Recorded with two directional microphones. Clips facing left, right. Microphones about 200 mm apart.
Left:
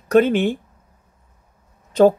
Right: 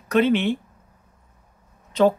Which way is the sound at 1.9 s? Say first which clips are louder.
Left 5 dB; 45° left (ahead or behind).